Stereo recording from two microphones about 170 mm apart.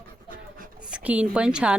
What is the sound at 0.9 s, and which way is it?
Speech, 5° right (ahead or behind).